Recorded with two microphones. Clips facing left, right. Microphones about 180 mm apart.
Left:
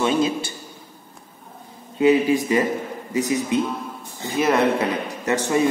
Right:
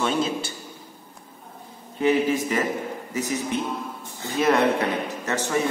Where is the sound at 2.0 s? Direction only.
15° left (ahead or behind).